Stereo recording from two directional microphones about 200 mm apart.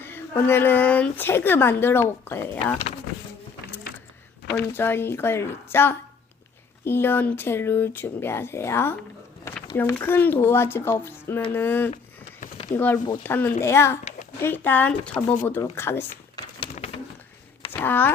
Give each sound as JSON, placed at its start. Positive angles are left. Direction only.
{"t": 0.0, "sound": "speech", "side_deg": 10}
{"t": 4.4, "sound": "speech", "side_deg": 10}
{"t": 16.6, "sound": "pigeon", "side_deg": 30}
{"t": 17.7, "sound": "a sound", "side_deg": 10}